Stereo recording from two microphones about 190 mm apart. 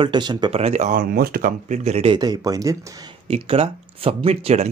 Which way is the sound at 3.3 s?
30° right (ahead or behind).